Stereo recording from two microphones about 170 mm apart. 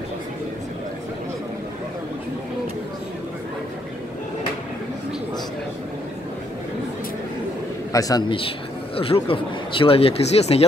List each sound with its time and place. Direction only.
7.9 s a man's voice: 20° left (ahead or behind); by 10.6 s 40° left (ahead or behind)